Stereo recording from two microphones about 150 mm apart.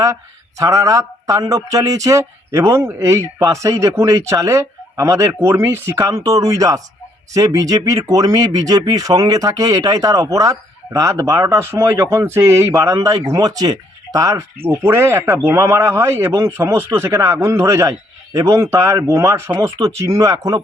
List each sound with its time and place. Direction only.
0.6 s speech: 20° right (ahead or behind)